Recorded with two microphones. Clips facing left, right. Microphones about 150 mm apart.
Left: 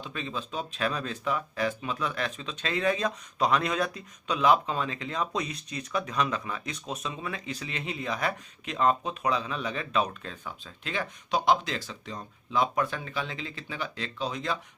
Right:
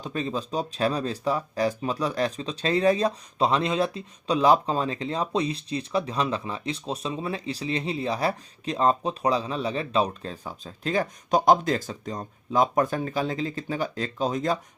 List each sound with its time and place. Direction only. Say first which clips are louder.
0.0 s speech: right 6 dB; 40° right (ahead or behind)